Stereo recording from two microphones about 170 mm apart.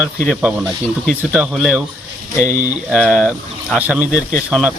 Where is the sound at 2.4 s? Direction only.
50° right (ahead or behind).